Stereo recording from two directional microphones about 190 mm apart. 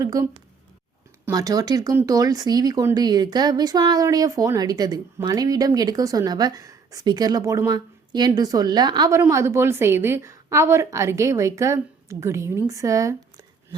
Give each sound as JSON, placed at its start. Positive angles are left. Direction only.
{"t": 0.0, "sound": "a woman's voice", "side_deg": -15}